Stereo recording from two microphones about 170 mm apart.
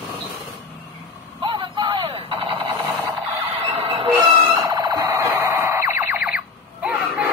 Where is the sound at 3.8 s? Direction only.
35° right (ahead or behind).